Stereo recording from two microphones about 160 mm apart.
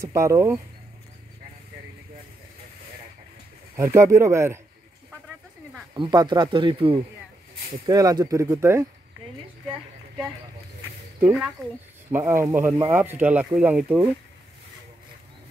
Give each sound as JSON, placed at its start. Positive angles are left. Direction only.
{"t": 0.0, "sound": "speech", "side_deg": -20}
{"t": 3.7, "sound": "speech", "side_deg": -20}
{"t": 5.9, "sound": "speech", "side_deg": -30}
{"t": 7.8, "sound": "speech", "side_deg": -25}
{"t": 11.1, "sound": "speech", "side_deg": -10}